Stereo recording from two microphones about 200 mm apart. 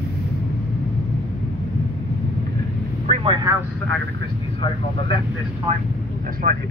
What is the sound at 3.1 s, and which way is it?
Vehicle, 25° right (ahead or behind).